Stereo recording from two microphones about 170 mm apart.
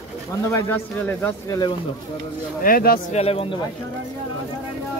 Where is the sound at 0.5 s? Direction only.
10° left (ahead or behind).